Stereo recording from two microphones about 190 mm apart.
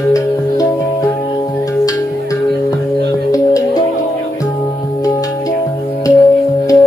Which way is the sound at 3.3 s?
20° left (ahead or behind).